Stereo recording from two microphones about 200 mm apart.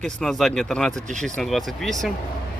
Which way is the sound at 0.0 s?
Centre (ahead or behind).